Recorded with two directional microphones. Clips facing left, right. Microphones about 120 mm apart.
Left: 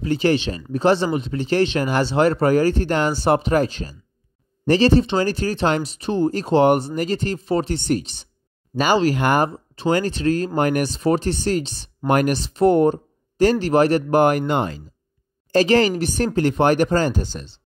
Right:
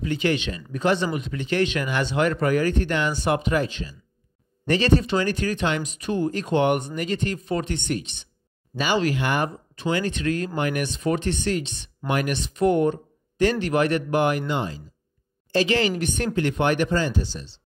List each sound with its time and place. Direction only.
0.0 s speech: 35° left (ahead or behind); by 14.8 s 55° left (ahead or behind)
15.5 s speech: 40° left (ahead or behind)